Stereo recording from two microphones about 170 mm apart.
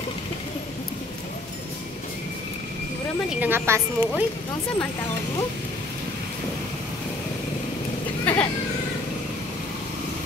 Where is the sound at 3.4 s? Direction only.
15° right (ahead or behind).